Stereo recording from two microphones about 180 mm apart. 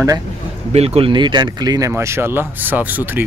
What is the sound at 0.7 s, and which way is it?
Speech, 35° right (ahead or behind).